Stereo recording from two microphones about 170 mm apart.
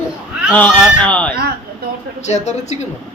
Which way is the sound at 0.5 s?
10° left (ahead or behind).